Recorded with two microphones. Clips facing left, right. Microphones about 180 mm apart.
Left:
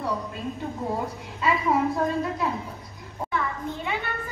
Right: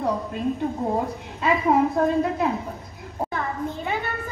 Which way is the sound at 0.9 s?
50° right (ahead or behind).